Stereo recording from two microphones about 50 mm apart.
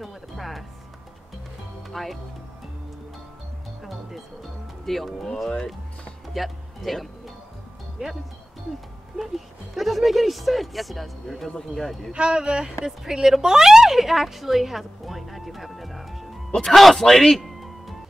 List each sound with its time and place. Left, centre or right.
0.0 s speech: centre
1.8 s music: centre
3.8 s speech: centre
6.3 s speech: centre
8.0 s speech: right
9.1 s speech: centre
12.1 s a woman's voice: centre